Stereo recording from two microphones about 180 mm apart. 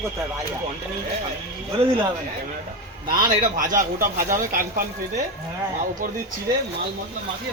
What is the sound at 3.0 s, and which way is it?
A man's voice, 50° right (ahead or behind).